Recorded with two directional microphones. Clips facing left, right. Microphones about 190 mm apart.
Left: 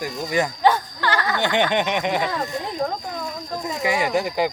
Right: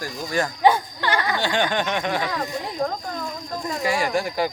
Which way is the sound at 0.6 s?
15° right (ahead or behind).